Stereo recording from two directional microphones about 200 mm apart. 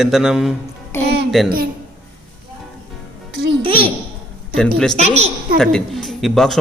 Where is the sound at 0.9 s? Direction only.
10° left (ahead or behind).